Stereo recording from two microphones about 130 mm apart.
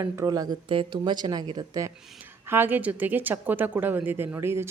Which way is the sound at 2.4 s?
15° right (ahead or behind).